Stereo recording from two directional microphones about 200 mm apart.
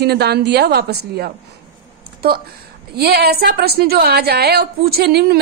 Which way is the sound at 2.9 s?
55° right (ahead or behind).